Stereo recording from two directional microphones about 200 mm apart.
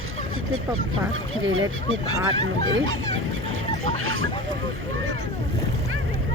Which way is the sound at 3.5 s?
90° right.